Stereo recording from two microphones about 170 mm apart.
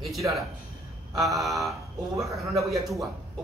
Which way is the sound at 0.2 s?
15° right (ahead or behind).